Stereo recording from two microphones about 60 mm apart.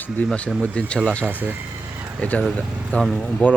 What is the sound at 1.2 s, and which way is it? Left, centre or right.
Speech, right.